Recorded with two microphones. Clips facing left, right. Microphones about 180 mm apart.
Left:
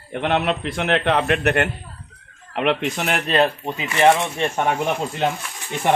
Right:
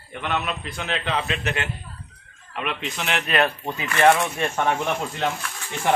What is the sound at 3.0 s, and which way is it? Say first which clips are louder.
Speech: left 1 dB; 40° left (ahead or behind).